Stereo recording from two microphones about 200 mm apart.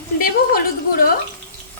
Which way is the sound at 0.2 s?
50° left (ahead or behind).